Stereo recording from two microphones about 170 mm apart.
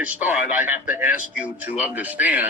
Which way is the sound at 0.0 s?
10° right (ahead or behind).